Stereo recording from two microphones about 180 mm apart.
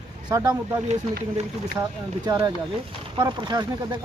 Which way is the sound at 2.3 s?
20° right (ahead or behind).